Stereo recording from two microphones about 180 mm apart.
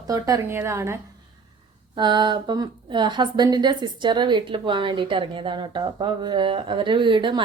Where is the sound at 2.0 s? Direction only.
25° right (ahead or behind).